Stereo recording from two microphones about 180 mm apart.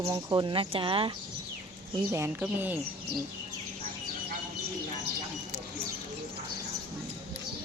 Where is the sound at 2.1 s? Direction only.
15° right (ahead or behind).